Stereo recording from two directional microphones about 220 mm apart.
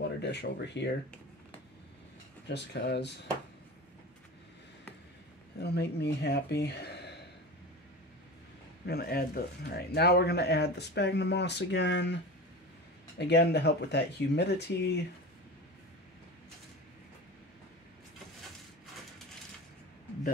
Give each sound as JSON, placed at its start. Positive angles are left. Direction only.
{"t": 0.0, "sound": "speech", "side_deg": 50}
{"t": 2.4, "sound": "speech", "side_deg": 50}
{"t": 5.6, "sound": "speech", "side_deg": 45}
{"t": 8.8, "sound": "speech", "side_deg": 45}
{"t": 13.2, "sound": "speech", "side_deg": 50}